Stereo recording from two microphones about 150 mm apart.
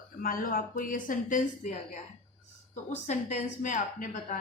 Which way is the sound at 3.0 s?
50° left (ahead or behind).